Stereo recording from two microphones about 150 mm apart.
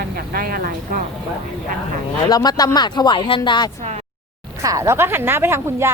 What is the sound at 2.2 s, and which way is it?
Speech, 25° left (ahead or behind).